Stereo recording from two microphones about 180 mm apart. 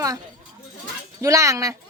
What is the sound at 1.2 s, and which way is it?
Speech, 15° right (ahead or behind).